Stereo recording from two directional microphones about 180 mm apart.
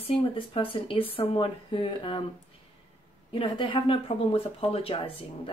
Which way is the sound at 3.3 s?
30° left (ahead or behind).